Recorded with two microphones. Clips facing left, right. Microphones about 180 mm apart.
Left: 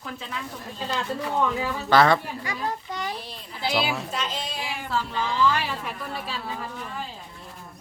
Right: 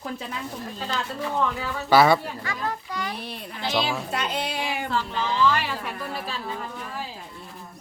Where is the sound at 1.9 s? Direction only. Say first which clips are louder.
Right 1 dB; 10° right (ahead or behind).